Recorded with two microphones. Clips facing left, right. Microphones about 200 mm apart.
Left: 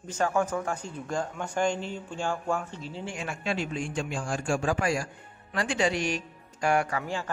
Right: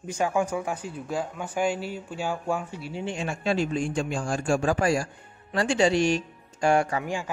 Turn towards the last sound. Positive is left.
turn(degrees=-15)  # may be behind; listen again after turning